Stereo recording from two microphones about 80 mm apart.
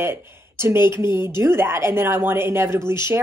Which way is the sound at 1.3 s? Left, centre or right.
Right.